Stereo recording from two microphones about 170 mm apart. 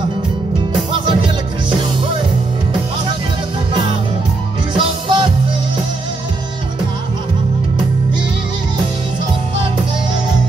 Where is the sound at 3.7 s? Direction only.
25° right (ahead or behind).